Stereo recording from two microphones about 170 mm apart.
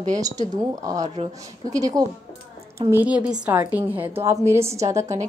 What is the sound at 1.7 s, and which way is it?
Speech, 20° right (ahead or behind).